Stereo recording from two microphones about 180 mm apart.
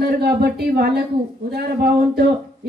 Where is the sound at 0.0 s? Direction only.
60° right (ahead or behind).